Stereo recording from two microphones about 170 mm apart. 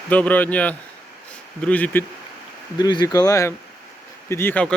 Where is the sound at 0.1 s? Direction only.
10° left (ahead or behind).